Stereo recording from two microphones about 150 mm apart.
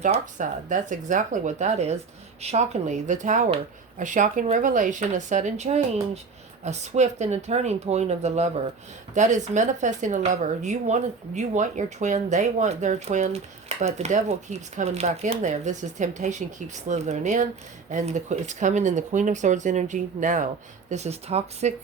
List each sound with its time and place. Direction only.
0.0 s speech: 55° right (ahead or behind)
20.9 s speech: 45° right (ahead or behind)